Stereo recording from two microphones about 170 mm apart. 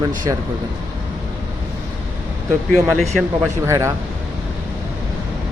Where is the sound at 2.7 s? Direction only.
Centre (ahead or behind).